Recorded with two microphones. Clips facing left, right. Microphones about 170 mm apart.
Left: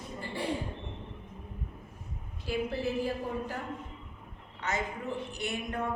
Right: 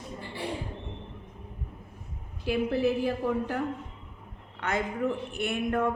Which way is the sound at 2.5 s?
60° right (ahead or behind).